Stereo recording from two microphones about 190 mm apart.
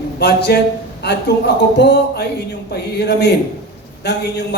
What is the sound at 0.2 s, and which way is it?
A man's voice, 60° left (ahead or behind).